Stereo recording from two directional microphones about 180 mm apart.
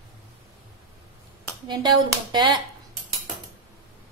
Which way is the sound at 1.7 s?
25° right (ahead or behind).